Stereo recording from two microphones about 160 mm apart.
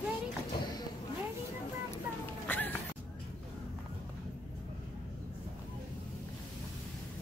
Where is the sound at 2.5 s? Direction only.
10° left (ahead or behind).